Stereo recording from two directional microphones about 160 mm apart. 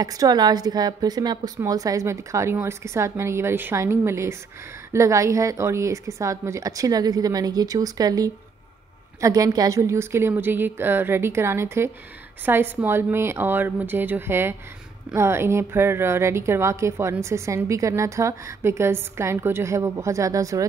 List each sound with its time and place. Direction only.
0.0 s a woman's voice: 25° right (ahead or behind)